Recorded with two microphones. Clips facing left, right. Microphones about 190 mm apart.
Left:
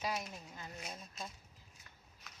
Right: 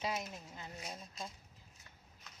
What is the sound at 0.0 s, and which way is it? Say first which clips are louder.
Speech: even; 20° right (ahead or behind).